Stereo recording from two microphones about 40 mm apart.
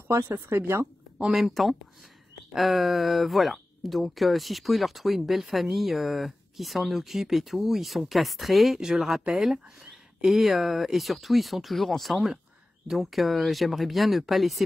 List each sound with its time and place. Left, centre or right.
0.1 s speech: right
1.5 s speech: centre